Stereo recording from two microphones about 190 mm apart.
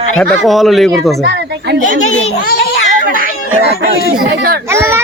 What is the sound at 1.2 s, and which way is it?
Speech, 65° right (ahead or behind).